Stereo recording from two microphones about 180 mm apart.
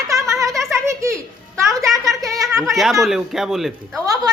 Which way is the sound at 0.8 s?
15° right (ahead or behind).